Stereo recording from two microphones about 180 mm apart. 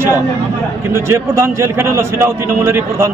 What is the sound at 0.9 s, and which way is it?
A man's voice, 15° right (ahead or behind).